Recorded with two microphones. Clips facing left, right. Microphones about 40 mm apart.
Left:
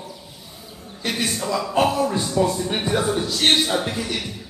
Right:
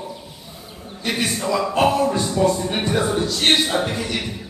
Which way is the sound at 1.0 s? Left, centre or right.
Centre.